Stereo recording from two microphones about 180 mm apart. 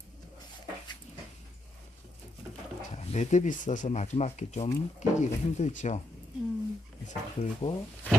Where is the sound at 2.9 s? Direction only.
40° left (ahead or behind).